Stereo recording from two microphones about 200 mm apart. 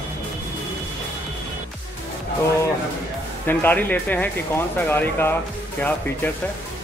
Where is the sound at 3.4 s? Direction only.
10° left (ahead or behind).